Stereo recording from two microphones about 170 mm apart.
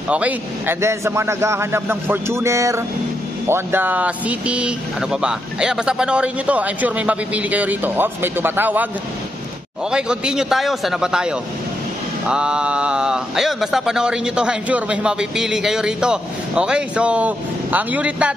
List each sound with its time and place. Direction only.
0.1 s speech: 10° right (ahead or behind)
9.8 s speech: 5° right (ahead or behind)